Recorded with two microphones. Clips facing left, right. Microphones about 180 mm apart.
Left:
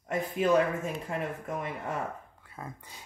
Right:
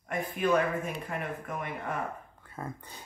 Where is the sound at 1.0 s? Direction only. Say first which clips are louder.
Left 2 dB; 25° left (ahead or behind).